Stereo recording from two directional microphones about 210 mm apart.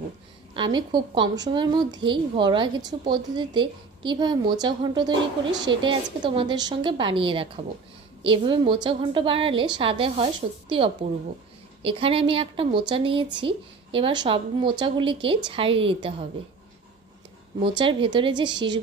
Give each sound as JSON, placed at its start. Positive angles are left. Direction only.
{"t": 0.6, "sound": "a woman's voice", "side_deg": -20}
{"t": 17.6, "sound": "a woman's voice", "side_deg": -25}